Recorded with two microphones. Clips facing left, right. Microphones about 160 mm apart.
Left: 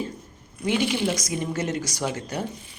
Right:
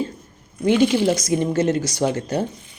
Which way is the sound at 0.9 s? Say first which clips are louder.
Right 7 dB; 35° right (ahead or behind).